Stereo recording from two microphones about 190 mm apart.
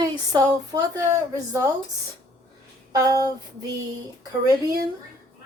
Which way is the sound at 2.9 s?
20° right (ahead or behind).